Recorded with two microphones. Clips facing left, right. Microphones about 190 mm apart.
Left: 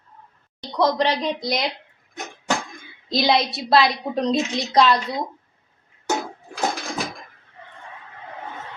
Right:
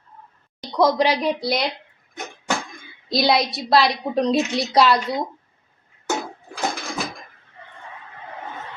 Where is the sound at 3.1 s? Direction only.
Centre (ahead or behind).